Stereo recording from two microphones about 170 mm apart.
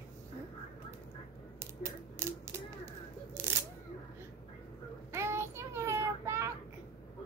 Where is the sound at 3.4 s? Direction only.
15° right (ahead or behind).